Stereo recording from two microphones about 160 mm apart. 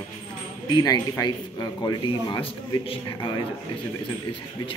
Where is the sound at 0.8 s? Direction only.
25° left (ahead or behind).